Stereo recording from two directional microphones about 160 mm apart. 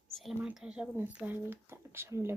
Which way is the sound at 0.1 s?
Centre (ahead or behind).